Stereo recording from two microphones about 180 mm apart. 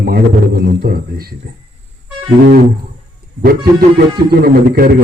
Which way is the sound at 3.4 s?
55° right (ahead or behind).